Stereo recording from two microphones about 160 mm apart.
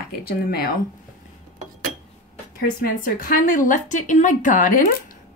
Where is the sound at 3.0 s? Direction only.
65° left (ahead or behind).